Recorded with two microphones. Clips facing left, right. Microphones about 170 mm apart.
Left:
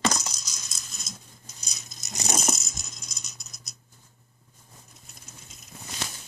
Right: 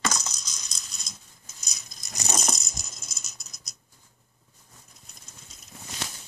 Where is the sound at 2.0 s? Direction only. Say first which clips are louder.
Left 1 dB; 20° left (ahead or behind).